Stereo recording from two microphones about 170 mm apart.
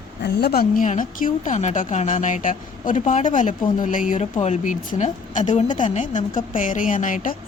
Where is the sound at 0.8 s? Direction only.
50° left (ahead or behind).